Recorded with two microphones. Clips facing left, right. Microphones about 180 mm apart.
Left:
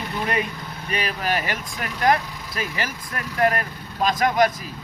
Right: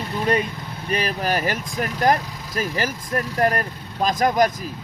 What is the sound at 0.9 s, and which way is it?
Speech, 40° right (ahead or behind).